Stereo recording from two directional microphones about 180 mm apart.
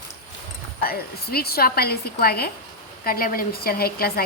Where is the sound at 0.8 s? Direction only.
55° left (ahead or behind).